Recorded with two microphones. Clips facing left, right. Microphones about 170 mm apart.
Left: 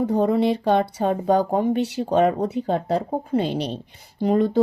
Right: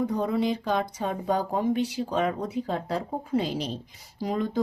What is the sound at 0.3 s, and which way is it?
Speech, 70° left (ahead or behind).